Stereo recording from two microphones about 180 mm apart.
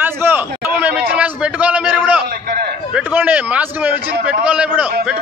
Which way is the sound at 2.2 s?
55° right (ahead or behind).